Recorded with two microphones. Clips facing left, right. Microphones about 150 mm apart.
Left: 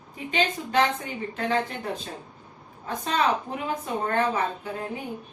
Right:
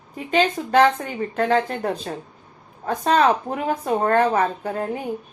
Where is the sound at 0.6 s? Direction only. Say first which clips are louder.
Right 7 dB; 55° right (ahead or behind).